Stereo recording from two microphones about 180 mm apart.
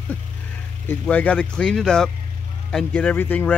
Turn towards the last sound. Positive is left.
turn(degrees=10)  # may be behind; listen again after turning